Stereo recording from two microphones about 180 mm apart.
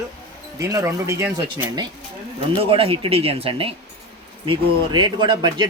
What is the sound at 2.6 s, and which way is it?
Speech, 30° right (ahead or behind).